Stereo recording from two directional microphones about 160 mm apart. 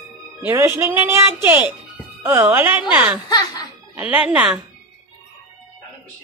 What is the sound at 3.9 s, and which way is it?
Speech, 10° right (ahead or behind).